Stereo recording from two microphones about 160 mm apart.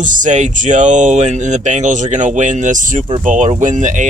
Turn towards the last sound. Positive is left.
turn(degrees=-50)  # may be behind; listen again after turning